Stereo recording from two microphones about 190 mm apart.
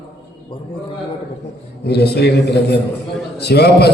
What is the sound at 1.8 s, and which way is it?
A man's voice, 60° left (ahead or behind).